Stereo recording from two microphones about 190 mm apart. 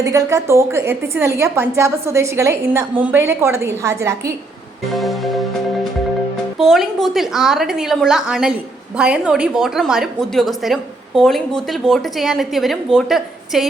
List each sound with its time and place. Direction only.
0.0 s a woman's voice: 15° right (ahead or behind)
4.9 s music: centre (ahead or behind)
6.6 s a woman's voice: centre (ahead or behind)